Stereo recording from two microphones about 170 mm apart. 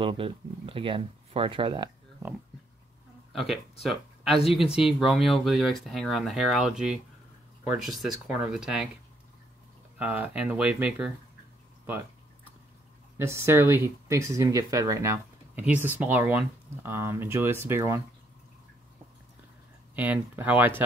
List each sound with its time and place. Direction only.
0.0 s speech: 30° right (ahead or behind)
3.3 s speech: centre (ahead or behind)
9.9 s speech: 10° right (ahead or behind)
13.2 s speech: 15° right (ahead or behind)
20.0 s speech: 10° right (ahead or behind)